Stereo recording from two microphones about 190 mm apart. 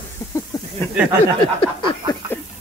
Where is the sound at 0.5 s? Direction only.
20° left (ahead or behind).